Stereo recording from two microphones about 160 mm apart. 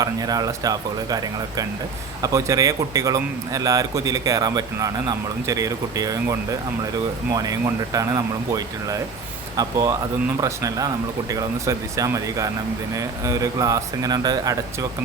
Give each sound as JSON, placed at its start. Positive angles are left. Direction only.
{"t": 0.0, "sound": "a man's voice", "side_deg": -25}
{"t": 7.3, "sound": "a man's voice", "side_deg": -20}